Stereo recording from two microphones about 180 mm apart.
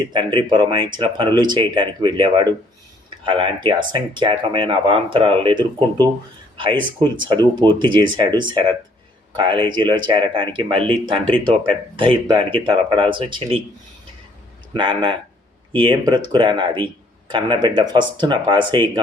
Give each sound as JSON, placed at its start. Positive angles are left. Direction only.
{"t": 0.1, "sound": "speech", "side_deg": -25}
{"t": 14.8, "sound": "speech", "side_deg": -25}